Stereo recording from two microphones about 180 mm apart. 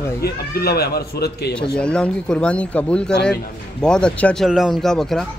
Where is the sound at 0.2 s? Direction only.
60° left (ahead or behind).